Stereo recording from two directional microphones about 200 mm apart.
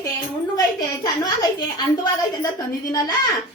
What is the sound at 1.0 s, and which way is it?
Speech, 20° left (ahead or behind).